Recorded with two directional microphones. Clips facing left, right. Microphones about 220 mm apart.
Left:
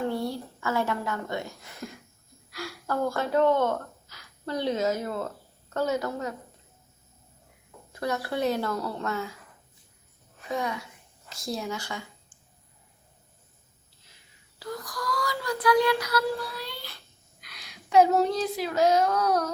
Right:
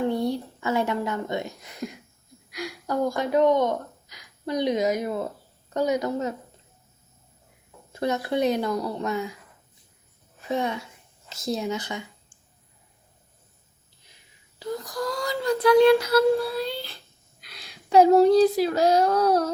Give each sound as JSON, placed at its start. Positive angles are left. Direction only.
{"t": 0.0, "sound": "a woman's voice", "side_deg": -20}
{"t": 7.9, "sound": "a woman's voice", "side_deg": -20}
{"t": 10.5, "sound": "a woman's voice", "side_deg": -25}
{"t": 14.6, "sound": "child singing", "side_deg": -25}